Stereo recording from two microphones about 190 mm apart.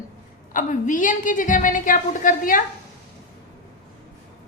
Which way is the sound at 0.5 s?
40° left (ahead or behind).